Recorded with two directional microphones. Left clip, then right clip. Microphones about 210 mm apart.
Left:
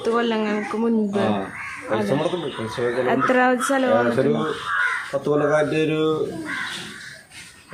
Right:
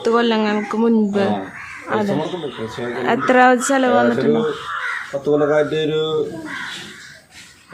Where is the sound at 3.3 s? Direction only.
45° right (ahead or behind).